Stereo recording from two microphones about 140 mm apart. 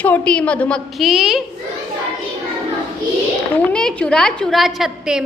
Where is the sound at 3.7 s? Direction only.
5° left (ahead or behind).